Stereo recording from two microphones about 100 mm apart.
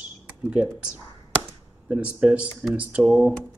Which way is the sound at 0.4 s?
15° right (ahead or behind).